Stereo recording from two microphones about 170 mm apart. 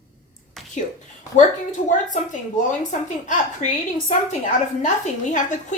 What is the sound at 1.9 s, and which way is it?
A woman's voice, 45° left (ahead or behind).